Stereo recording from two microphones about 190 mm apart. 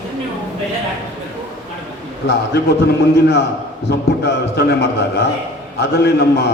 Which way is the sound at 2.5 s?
60° left (ahead or behind).